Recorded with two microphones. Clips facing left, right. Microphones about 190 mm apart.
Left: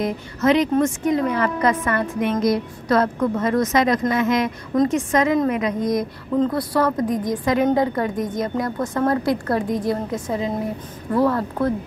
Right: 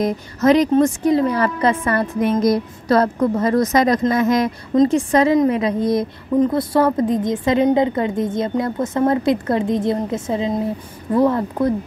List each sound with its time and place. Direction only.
0.0 s a woman's voice: 40° right (ahead or behind)
6.3 s a woman's voice: 15° right (ahead or behind)
6.7 s a woman's voice: 25° right (ahead or behind)